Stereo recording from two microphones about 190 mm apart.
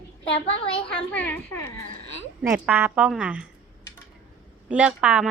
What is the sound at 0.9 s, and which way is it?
Speech, 10° left (ahead or behind).